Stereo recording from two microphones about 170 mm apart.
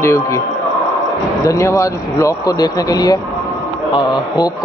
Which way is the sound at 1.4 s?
20° left (ahead or behind).